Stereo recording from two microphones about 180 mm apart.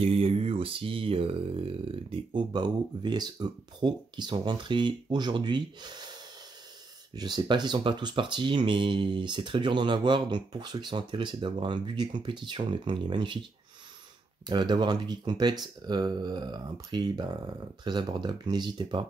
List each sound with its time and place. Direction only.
0.0 s speech: 30° right (ahead or behind)
7.2 s speech: 25° right (ahead or behind)
14.4 s speech: 25° right (ahead or behind)